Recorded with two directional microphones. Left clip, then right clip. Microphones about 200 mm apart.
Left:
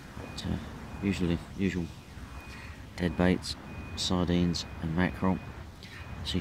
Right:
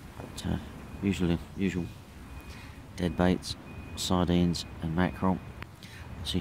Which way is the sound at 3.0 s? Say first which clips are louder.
Even; 15° right (ahead or behind).